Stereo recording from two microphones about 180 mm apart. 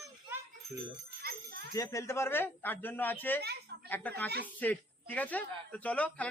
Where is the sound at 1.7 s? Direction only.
20° left (ahead or behind).